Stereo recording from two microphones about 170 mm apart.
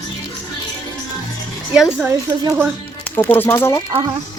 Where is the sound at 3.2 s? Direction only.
10° left (ahead or behind).